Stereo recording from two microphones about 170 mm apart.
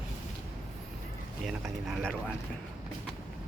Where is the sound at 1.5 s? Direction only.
Centre (ahead or behind).